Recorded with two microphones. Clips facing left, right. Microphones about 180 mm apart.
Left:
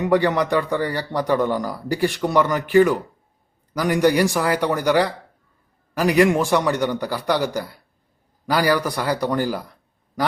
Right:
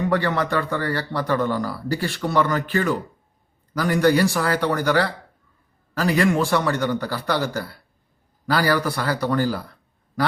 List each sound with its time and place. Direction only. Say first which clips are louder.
0.0 s a man's voice: left 3 dB; 15° left (ahead or behind)